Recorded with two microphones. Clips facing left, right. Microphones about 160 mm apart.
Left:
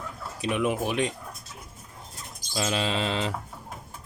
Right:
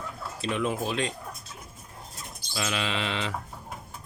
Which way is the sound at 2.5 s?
35° left (ahead or behind).